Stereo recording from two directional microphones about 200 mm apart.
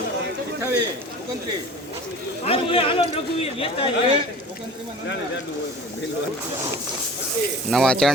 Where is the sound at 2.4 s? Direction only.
30° left (ahead or behind).